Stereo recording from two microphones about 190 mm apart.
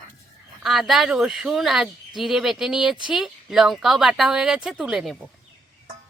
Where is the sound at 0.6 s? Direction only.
Centre (ahead or behind).